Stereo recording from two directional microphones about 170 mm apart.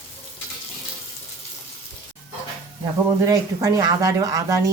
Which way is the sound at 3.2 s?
20° right (ahead or behind).